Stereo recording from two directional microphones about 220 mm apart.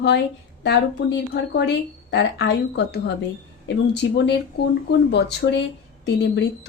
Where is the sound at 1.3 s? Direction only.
50° left (ahead or behind).